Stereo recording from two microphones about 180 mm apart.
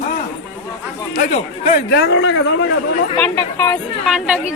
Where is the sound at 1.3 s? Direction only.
40° left (ahead or behind).